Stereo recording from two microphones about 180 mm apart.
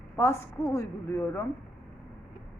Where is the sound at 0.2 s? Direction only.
15° left (ahead or behind).